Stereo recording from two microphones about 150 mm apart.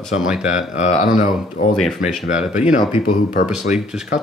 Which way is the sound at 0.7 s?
55° left (ahead or behind).